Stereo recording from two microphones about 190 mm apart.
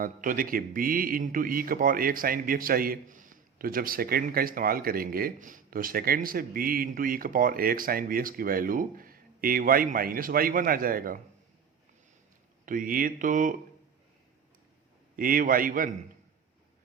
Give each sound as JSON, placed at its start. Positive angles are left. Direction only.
{"t": 0.0, "sound": "a man's voice", "side_deg": -45}
{"t": 12.6, "sound": "a man's voice", "side_deg": -45}
{"t": 15.1, "sound": "a man's voice", "side_deg": -50}